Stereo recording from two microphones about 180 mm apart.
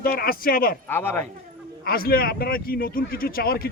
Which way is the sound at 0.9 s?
10° left (ahead or behind).